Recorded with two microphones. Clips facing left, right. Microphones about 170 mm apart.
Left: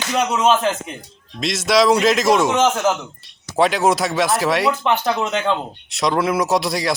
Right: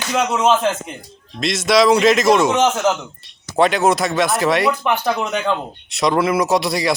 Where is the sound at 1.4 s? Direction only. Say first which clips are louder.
Right 1 dB; centre (ahead or behind).